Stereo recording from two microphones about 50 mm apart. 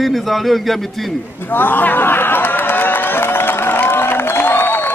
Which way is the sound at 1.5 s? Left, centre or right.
Left.